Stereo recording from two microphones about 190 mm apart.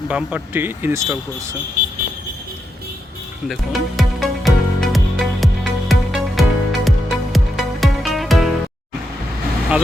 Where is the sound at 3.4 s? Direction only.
Centre (ahead or behind).